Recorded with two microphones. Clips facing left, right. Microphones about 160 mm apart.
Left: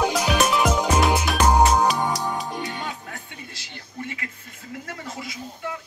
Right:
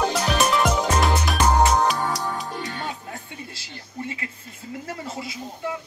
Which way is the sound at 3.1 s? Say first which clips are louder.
Right 2 dB; 30° right (ahead or behind).